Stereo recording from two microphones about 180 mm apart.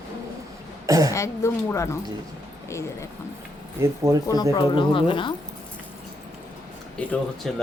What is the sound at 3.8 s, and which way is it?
Speech, 15° right (ahead or behind).